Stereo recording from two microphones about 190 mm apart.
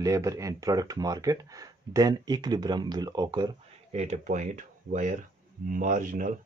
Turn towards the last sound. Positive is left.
turn(degrees=-45)  # may be behind; listen again after turning